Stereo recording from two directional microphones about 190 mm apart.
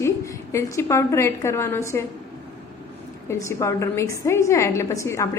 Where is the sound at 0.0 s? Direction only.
15° left (ahead or behind).